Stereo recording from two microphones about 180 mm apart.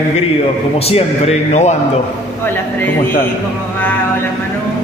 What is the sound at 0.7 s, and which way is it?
Speech, 35° left (ahead or behind).